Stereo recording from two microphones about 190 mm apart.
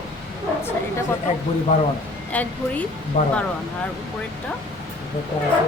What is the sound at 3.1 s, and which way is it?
Speech, 40° left (ahead or behind).